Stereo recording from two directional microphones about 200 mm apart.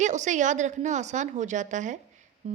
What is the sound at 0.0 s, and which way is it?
A woman's voice, 35° right (ahead or behind).